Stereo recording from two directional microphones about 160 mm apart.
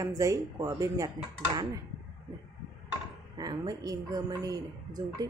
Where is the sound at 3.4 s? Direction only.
25° right (ahead or behind).